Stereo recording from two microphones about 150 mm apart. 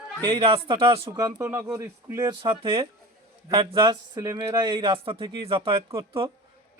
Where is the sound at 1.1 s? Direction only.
20° right (ahead or behind).